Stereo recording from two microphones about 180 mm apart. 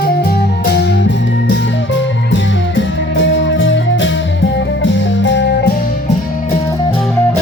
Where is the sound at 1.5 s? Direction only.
90° left.